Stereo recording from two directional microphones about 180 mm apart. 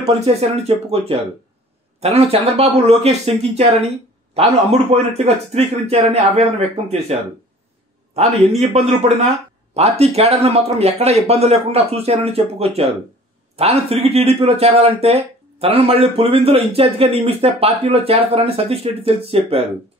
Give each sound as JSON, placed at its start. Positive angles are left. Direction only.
{"t": 0.0, "sound": "speech", "side_deg": -35}